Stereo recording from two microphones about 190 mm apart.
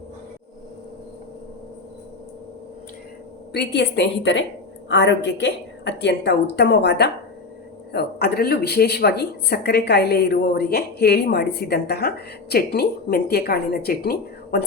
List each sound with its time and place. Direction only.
3.5 s speech: 60° left (ahead or behind)